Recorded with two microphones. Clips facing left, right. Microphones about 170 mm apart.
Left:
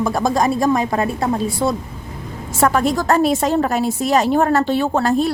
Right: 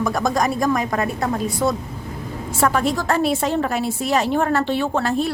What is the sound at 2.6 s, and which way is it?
A woman's voice, 45° left (ahead or behind).